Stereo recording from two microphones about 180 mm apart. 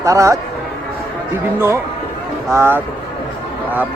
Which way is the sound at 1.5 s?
15° right (ahead or behind).